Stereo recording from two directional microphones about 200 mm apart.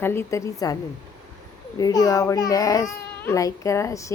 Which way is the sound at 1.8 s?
15° left (ahead or behind).